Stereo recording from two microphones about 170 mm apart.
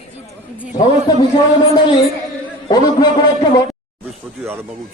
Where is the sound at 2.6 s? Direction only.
25° left (ahead or behind).